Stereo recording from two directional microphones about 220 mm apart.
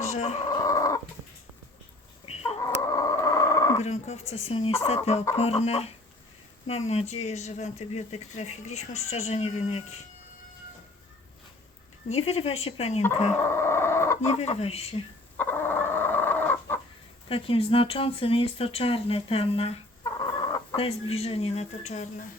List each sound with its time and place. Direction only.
0.1 s speech: 30° left (ahead or behind)
0.5 s chicken: 15° left (ahead or behind)
2.2 s chicken: 30° left (ahead or behind)
2.8 s a sound: 15° left (ahead or behind)
3.8 s speech: 30° left (ahead or behind)
12.0 s speech: 30° left (ahead or behind)
13.5 s a sound: 10° left (ahead or behind)
14.2 s speech: 30° left (ahead or behind)
15.4 s chicken: 10° left (ahead or behind)
17.2 s speech: 25° left (ahead or behind)